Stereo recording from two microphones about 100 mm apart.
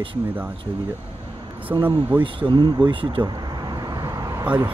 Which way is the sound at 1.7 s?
55° right (ahead or behind).